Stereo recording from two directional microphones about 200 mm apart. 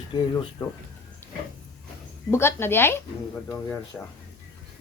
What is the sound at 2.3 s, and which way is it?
Speech, 10° left (ahead or behind).